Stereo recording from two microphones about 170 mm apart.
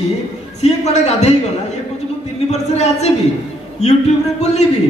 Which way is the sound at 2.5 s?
40° left (ahead or behind).